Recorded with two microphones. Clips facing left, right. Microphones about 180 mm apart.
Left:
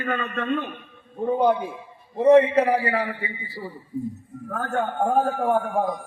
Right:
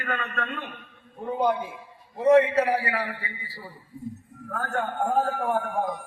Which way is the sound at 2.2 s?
25° left (ahead or behind).